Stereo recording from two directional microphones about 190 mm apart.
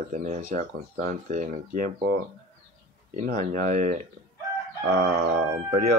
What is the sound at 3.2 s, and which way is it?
Speech, 45° right (ahead or behind).